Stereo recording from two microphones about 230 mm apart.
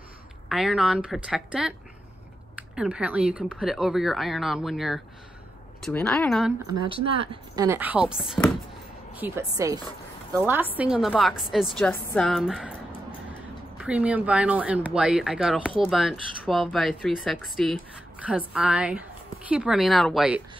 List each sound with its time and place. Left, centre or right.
0.5 s speech: centre
6.9 s speech: right
7.6 s a woman's voice: centre
13.7 s speech: centre